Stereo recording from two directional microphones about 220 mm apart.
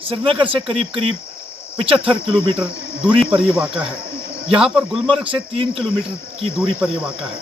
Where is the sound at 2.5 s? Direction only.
5° right (ahead or behind).